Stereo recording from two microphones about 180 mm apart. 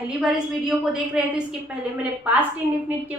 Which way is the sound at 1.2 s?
5° right (ahead or behind).